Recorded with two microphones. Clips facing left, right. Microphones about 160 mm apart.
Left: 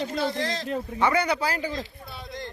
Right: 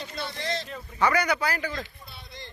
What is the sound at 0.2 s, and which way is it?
Speech, 90° left.